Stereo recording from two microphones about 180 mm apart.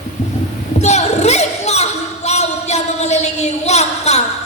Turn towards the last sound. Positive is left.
turn(degrees=35)  # may be behind; listen again after turning